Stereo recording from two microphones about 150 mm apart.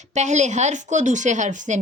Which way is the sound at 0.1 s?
50° right (ahead or behind).